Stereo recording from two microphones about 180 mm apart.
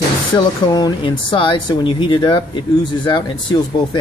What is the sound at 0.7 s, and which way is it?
Speech, 25° left (ahead or behind).